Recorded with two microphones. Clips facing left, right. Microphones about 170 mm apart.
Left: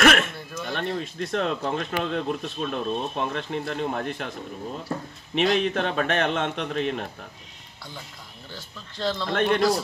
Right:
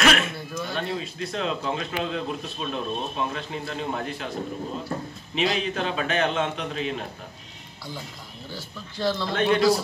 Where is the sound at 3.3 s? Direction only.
50° left (ahead or behind).